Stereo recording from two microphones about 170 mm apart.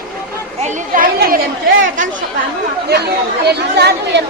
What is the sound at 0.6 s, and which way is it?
Speech, 50° right (ahead or behind).